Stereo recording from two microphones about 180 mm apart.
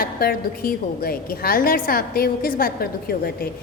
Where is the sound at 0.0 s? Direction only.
55° left (ahead or behind).